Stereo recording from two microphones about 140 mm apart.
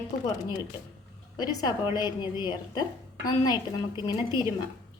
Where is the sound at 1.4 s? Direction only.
30° left (ahead or behind).